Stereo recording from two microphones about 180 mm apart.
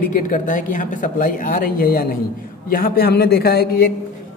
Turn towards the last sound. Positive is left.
turn(degrees=60)  # may be behind; listen again after turning